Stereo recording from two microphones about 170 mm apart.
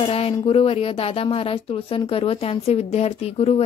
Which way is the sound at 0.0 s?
35° left (ahead or behind).